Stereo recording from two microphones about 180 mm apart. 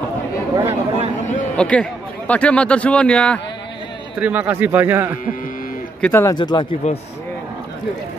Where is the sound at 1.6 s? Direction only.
5° left (ahead or behind).